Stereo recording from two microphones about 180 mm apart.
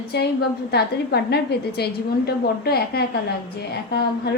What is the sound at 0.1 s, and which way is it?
A woman's voice, 65° left (ahead or behind).